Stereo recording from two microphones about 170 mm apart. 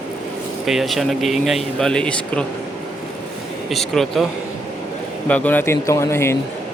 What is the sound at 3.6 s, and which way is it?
Speech, centre (ahead or behind).